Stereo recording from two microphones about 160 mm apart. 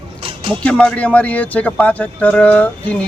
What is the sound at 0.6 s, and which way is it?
Speech, 5° left (ahead or behind).